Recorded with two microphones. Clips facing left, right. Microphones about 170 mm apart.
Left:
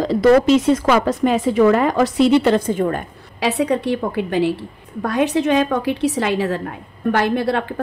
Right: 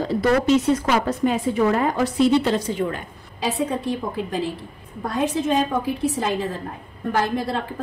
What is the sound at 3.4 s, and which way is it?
A woman's voice, 75° left (ahead or behind).